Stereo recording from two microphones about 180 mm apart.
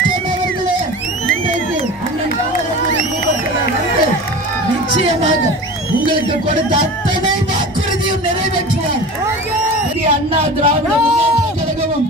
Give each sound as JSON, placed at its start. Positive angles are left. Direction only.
{"t": 10.0, "sound": "speech", "side_deg": -35}